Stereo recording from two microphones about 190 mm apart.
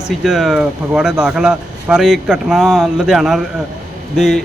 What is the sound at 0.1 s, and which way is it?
A man's voice, centre (ahead or behind).